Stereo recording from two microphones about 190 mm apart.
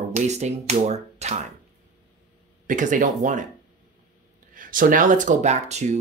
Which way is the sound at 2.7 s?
40° right (ahead or behind).